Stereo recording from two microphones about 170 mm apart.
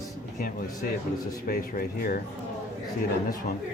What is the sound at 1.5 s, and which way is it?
Speech, 60° left (ahead or behind).